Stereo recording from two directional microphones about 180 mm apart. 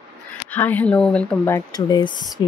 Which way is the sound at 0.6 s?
10° left (ahead or behind).